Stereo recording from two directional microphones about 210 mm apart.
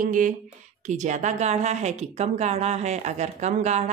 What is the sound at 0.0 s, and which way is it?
A woman's voice, 40° right (ahead or behind).